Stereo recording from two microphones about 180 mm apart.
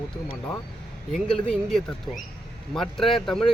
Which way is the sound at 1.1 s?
Centre (ahead or behind).